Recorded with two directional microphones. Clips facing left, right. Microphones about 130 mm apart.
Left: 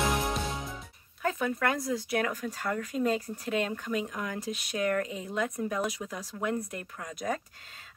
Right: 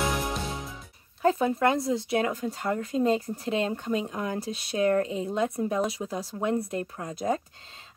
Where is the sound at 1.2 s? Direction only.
30° right (ahead or behind).